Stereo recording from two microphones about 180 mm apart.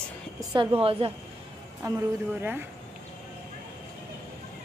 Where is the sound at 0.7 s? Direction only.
30° right (ahead or behind).